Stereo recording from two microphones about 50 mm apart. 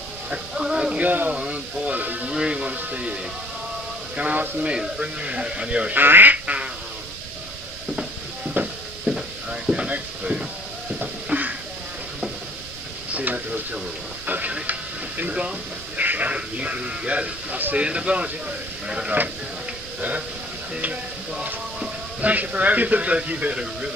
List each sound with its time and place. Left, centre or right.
0.3 s music: centre
1.0 s speech: right
1.3 s a sound: right
2.2 s speech: centre
4.2 s speech: right
5.9 s speech: right
6.3 s quack: right
8.6 s a sound: right
9.1 s a sound: centre; by 11.5 s right
13.1 s a sound: right
14.2 s speech: right; by 19.1 s centre
20.0 s speech: right